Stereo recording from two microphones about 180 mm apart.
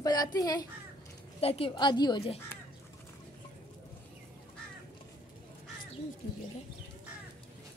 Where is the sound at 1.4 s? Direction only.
30° left (ahead or behind).